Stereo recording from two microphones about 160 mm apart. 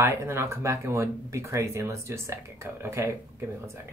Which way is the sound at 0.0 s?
15° right (ahead or behind).